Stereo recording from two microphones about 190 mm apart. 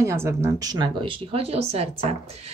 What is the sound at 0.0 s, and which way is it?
Speech, 15° right (ahead or behind).